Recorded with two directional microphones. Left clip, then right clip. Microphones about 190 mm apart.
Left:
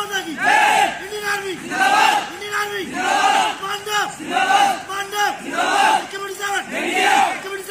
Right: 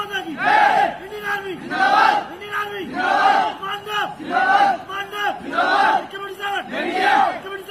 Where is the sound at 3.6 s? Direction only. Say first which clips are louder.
Left 2 dB; 20° right (ahead or behind).